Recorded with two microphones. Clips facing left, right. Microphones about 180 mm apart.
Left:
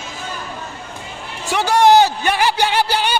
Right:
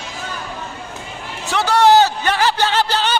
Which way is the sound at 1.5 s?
15° left (ahead or behind).